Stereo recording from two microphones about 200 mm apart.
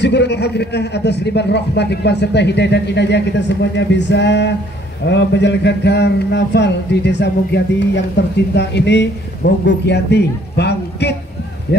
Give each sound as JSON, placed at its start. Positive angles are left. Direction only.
{"t": 0.0, "sound": "a man's voice", "side_deg": 60}